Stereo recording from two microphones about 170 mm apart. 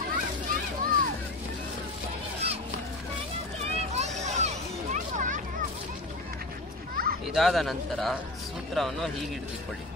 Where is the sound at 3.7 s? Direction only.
40° right (ahead or behind).